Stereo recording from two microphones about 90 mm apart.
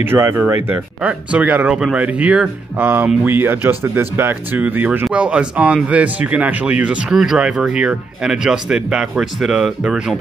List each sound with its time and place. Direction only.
0.0 s speech: 25° right (ahead or behind)
1.0 s speech: 15° right (ahead or behind)